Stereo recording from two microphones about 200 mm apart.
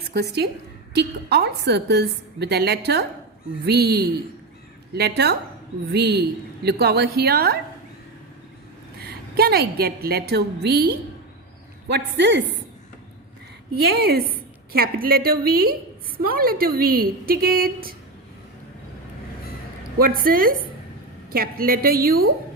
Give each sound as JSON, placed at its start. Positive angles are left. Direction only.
{"t": 0.1, "sound": "a woman's voice", "side_deg": -55}
{"t": 9.0, "sound": "a woman's voice", "side_deg": -50}
{"t": 13.7, "sound": "a woman's voice", "side_deg": -50}
{"t": 20.1, "sound": "a woman's voice", "side_deg": -45}